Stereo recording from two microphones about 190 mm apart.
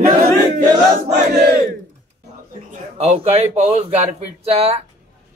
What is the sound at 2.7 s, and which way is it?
A man's voice, 35° right (ahead or behind).